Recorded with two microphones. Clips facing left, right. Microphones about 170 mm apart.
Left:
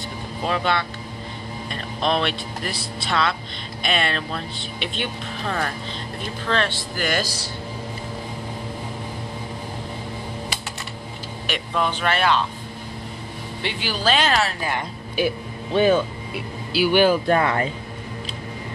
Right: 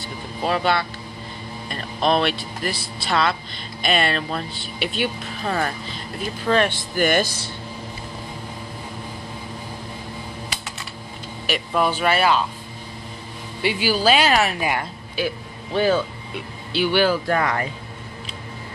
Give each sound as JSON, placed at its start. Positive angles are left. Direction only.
{"t": 0.4, "sound": "speech", "side_deg": -5}
{"t": 11.4, "sound": "speech", "side_deg": -5}
{"t": 13.6, "sound": "speech", "side_deg": -10}
{"t": 15.1, "sound": "speech", "side_deg": 20}